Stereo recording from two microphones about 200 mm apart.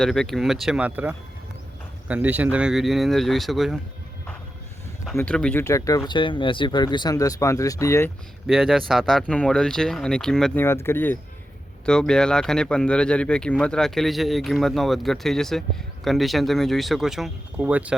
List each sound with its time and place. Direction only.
0.0 s speech: centre (ahead or behind)
5.1 s speech: 5° left (ahead or behind)
8.4 s speech: centre (ahead or behind)